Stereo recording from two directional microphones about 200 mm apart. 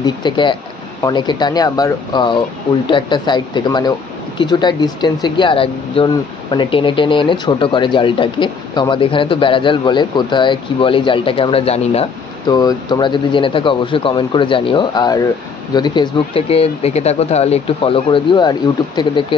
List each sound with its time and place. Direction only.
0.0 s speech: 25° left (ahead or behind)